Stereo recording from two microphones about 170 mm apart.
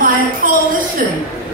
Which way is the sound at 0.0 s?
55° right (ahead or behind).